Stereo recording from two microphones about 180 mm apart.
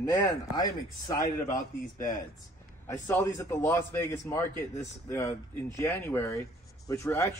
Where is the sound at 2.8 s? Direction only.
15° left (ahead or behind).